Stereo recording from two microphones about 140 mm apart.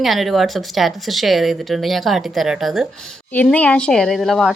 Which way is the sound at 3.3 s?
10° left (ahead or behind).